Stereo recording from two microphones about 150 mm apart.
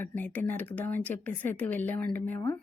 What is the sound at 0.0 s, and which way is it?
Speech, 15° left (ahead or behind).